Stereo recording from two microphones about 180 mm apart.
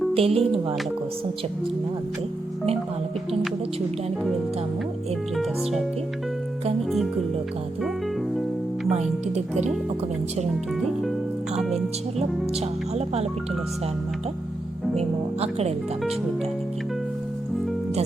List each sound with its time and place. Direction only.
0.1 s speech: 35° right (ahead or behind)
8.9 s speech: 40° right (ahead or behind)
11.5 s speech: centre (ahead or behind)
14.9 s music: 35° right (ahead or behind)